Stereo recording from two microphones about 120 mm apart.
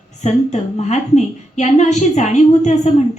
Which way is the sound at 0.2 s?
70° left (ahead or behind).